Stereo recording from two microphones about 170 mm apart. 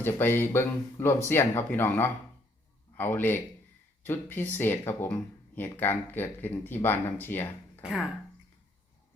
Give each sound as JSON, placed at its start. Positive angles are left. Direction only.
{"t": 0.0, "sound": "a man's voice", "side_deg": 15}
{"t": 7.8, "sound": "speech", "side_deg": -5}